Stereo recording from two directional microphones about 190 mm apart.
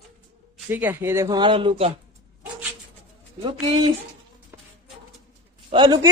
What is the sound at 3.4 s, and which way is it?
Speech, 30° right (ahead or behind).